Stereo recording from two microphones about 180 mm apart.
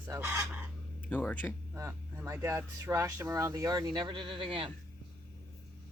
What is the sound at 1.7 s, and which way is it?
Speech, 15° right (ahead or behind).